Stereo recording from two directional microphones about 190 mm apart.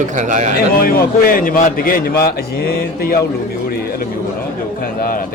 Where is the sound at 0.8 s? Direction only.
50° left (ahead or behind).